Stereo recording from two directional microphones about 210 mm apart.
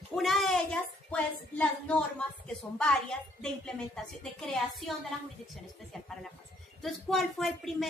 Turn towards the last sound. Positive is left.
turn(degrees=0)  # may be behind; listen again after turning